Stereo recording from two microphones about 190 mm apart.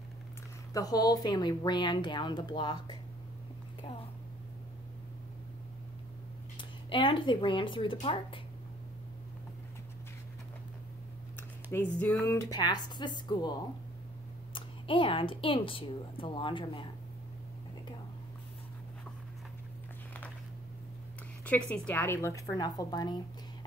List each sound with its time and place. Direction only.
0.7 s a woman's voice: 20° left (ahead or behind)
6.9 s a woman's voice: 25° left (ahead or behind)
11.3 s a sound: 10° left (ahead or behind)
12.0 s a woman's voice: 5° left (ahead or behind)
12.4 s a woman's voice: 20° left (ahead or behind)
14.5 s a woman's voice: 25° left (ahead or behind)
21.5 s a woman's voice: 5° left (ahead or behind)